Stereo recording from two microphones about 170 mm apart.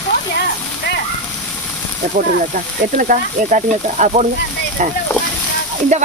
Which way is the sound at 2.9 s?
50° right (ahead or behind).